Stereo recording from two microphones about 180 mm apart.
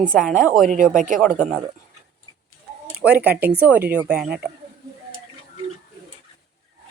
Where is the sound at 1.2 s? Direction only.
5° left (ahead or behind).